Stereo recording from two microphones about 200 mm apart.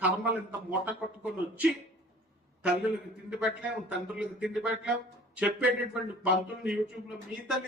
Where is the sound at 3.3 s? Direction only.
5° right (ahead or behind).